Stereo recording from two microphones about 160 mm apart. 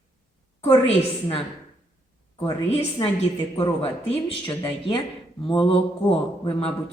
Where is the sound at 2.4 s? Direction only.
35° left (ahead or behind).